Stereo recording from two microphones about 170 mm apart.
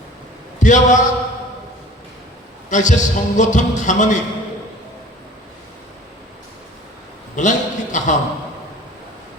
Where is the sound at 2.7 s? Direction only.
45° left (ahead or behind).